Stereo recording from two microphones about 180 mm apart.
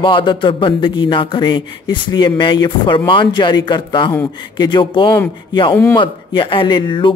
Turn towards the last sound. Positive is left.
turn(degrees=25)  # may be behind; listen again after turning